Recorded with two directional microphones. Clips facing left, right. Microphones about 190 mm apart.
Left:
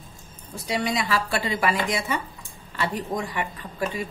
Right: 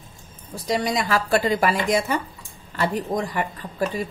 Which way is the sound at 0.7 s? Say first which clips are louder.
Right 3 dB; 45° right (ahead or behind).